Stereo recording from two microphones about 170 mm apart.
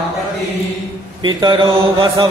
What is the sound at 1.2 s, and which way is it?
Chant, 25° right (ahead or behind).